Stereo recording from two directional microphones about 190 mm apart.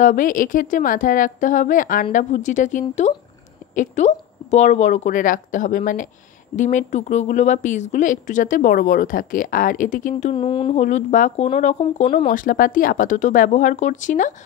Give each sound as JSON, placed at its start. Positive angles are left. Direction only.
{"t": 0.0, "sound": "speech", "side_deg": 45}
{"t": 10.3, "sound": "speech", "side_deg": 30}